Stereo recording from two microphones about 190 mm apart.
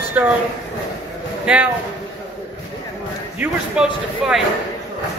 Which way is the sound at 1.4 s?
5° right (ahead or behind).